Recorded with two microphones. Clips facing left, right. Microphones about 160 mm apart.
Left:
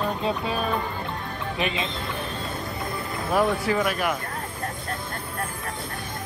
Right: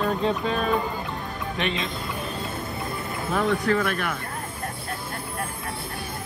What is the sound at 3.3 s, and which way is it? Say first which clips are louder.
Speech: even; 10° left (ahead or behind).